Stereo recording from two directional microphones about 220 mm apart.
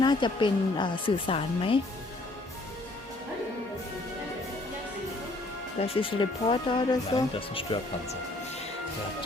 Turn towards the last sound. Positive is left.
turn(degrees=25)  # may be behind; listen again after turning